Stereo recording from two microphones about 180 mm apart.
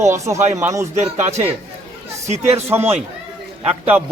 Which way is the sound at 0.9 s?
40° right (ahead or behind).